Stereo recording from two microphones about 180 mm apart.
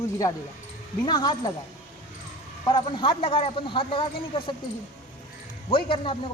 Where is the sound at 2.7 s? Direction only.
25° left (ahead or behind).